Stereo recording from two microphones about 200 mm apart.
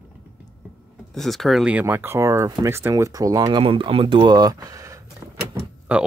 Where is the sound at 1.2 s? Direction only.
Centre (ahead or behind); by 5.0 s 15° right (ahead or behind).